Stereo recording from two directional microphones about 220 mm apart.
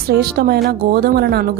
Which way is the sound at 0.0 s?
45° right (ahead or behind).